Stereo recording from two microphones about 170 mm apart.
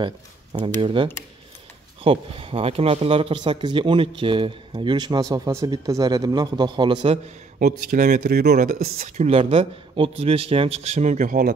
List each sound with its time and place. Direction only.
0.0 s speech: 30° right (ahead or behind)
7.5 s speech: 55° right (ahead or behind)
9.0 s speech: 45° right (ahead or behind)